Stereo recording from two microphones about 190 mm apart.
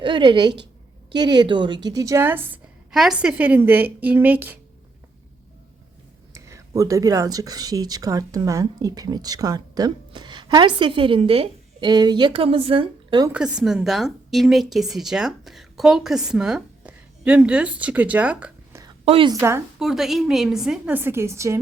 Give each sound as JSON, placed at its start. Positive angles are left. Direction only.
{"t": 0.0, "sound": "a woman's voice", "side_deg": -25}
{"t": 6.3, "sound": "speech", "side_deg": -15}
{"t": 13.3, "sound": "a woman's voice", "side_deg": -5}
{"t": 19.0, "sound": "a woman's voice", "side_deg": -30}
{"t": 19.3, "sound": "a woman's voice", "side_deg": -15}
{"t": 19.8, "sound": "a woman's voice", "side_deg": 0}